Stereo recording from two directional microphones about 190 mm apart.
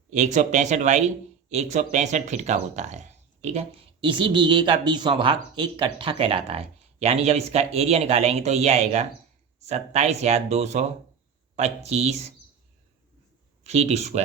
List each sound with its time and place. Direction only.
0.1 s speech: 40° right (ahead or behind)
13.7 s speech: 35° right (ahead or behind)